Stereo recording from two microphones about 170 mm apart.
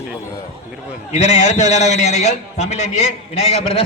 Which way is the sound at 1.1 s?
45° left (ahead or behind).